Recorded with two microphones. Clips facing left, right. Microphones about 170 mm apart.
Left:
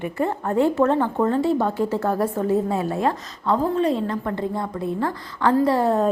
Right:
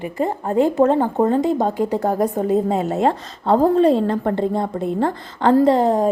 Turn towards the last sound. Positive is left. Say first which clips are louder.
# right 4 dB
turn(degrees=-15)  # may be behind; listen again after turning